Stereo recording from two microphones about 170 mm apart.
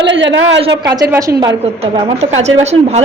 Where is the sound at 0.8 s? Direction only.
20° right (ahead or behind).